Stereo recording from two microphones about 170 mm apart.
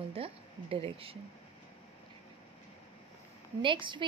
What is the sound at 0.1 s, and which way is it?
Speech, 35° right (ahead or behind).